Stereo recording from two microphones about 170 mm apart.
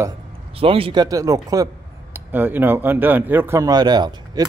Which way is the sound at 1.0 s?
20° right (ahead or behind).